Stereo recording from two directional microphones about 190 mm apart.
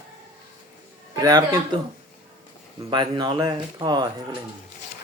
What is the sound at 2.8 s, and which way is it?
Speech, 25° right (ahead or behind).